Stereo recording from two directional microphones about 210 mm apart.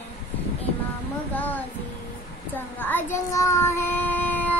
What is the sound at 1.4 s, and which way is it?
Child singing, 10° left (ahead or behind).